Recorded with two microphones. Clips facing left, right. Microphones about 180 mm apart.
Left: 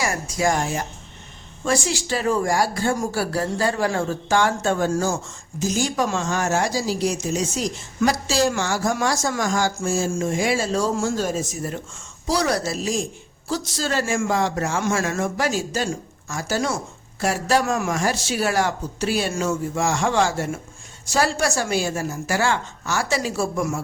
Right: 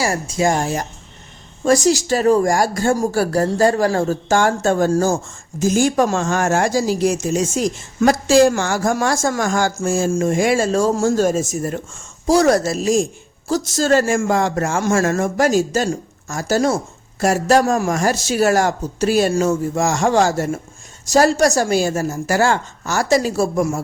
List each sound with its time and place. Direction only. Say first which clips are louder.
0.0 s speech: right 4 dB; 30° right (ahead or behind)
0.6 s a woman's voice: right 4 dB; 40° right (ahead or behind)